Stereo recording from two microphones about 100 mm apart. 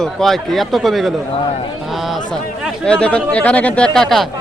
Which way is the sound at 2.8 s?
10° left (ahead or behind).